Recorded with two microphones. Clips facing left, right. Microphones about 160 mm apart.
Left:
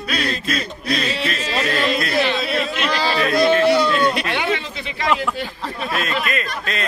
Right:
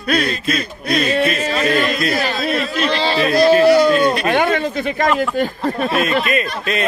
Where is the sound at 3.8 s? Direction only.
45° right (ahead or behind).